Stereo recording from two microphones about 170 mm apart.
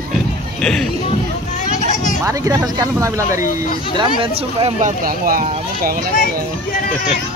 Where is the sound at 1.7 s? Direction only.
45° left (ahead or behind).